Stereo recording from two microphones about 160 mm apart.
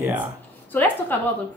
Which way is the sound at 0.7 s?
10° left (ahead or behind).